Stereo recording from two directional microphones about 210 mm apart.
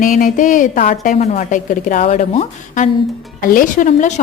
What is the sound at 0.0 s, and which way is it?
A woman's voice, 40° left (ahead or behind).